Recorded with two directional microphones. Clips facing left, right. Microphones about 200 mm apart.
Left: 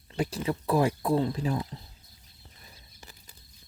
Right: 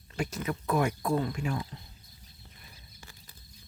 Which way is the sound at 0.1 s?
30° left (ahead or behind).